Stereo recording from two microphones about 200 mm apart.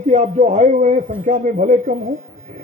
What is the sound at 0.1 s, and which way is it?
A man's voice, 35° right (ahead or behind).